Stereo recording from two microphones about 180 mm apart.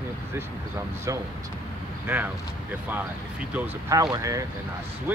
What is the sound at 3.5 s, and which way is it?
Speech, 10° right (ahead or behind).